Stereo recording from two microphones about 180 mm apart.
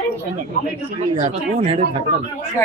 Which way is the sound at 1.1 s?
35° right (ahead or behind).